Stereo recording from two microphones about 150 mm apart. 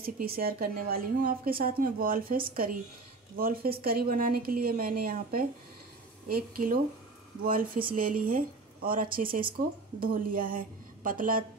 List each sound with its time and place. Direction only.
0.0 s a woman's voice: 85° right
3.3 s a woman's voice: 85° right; by 11.4 s 65° right (ahead or behind)